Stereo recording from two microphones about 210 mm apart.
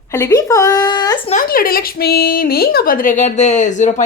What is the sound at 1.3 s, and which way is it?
A woman's voice, 40° left (ahead or behind).